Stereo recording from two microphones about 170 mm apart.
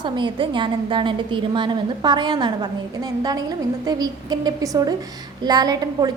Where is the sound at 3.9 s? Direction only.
25° right (ahead or behind).